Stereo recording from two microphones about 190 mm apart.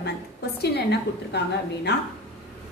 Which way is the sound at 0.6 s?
60° left (ahead or behind).